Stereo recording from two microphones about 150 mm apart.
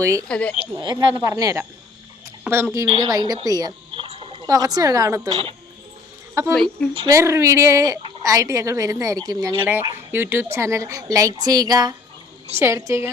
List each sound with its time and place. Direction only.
0.0 s speech: 20° right (ahead or behind)
0.3 s speech: 5° left (ahead or behind)
0.8 s speech: 30° right (ahead or behind)
4.1 s a sound: 40° right (ahead or behind)
4.4 s speech: 25° right (ahead or behind)
6.5 s a woman's voice: 5° left (ahead or behind)
7.1 s speech: 20° right (ahead or behind)
9.9 s a woman's voice: 15° right (ahead or behind)